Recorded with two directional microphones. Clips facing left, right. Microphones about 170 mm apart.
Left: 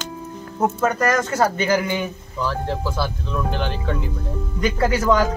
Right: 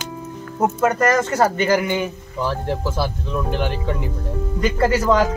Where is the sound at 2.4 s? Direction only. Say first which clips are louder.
Right 1 dB; 15° right (ahead or behind).